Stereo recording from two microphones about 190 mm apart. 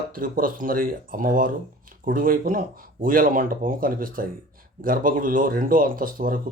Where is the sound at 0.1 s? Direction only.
45° right (ahead or behind).